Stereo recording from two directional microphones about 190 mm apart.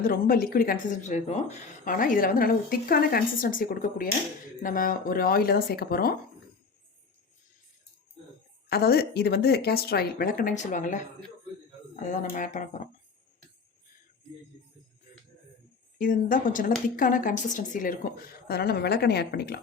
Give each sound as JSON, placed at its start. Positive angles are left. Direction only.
{"t": 0.0, "sound": "speech", "side_deg": 50}
{"t": 8.7, "sound": "a woman's voice", "side_deg": 55}
{"t": 16.0, "sound": "a woman's voice", "side_deg": 45}